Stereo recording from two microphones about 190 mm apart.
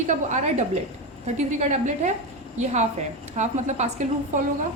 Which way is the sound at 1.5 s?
40° right (ahead or behind).